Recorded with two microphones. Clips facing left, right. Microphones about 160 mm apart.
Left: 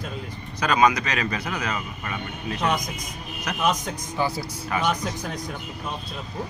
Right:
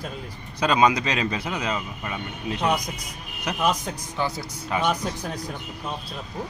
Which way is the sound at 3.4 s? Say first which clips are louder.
Even; 5° right (ahead or behind).